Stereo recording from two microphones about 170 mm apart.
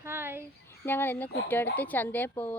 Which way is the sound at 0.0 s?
15° right (ahead or behind).